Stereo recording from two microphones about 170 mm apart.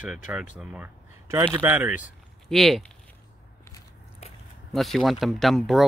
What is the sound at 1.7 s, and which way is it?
Speech, 10° right (ahead or behind).